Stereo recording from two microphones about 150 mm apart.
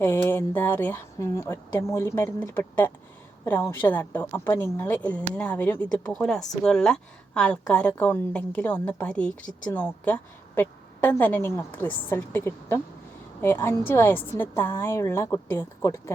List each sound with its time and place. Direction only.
0.0 s a woman's voice: 15° left (ahead or behind)